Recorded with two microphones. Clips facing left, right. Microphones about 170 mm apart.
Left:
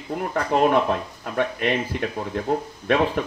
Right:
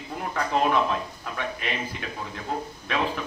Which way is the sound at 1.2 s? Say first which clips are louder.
Left 8 dB; 55° left (ahead or behind).